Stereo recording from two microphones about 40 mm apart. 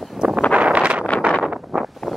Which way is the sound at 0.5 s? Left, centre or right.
Right.